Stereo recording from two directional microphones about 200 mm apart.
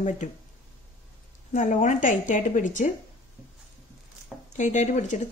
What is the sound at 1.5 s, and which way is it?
A woman's voice, 40° left (ahead or behind).